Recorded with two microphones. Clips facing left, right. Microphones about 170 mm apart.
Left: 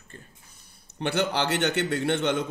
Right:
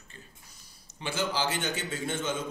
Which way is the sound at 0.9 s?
65° left (ahead or behind).